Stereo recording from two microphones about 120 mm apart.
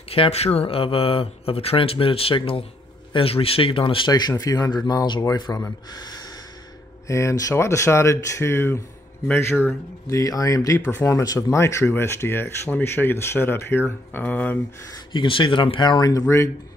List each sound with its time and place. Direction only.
0.1 s speech: 55° left (ahead or behind)
4.1 s speech: 30° left (ahead or behind); by 14.6 s 15° left (ahead or behind)
15.1 s speech: 45° left (ahead or behind); by 16.4 s 25° left (ahead or behind)